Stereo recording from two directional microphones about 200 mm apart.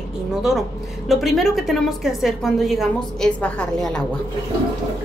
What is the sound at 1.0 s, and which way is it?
A woman's voice, centre (ahead or behind).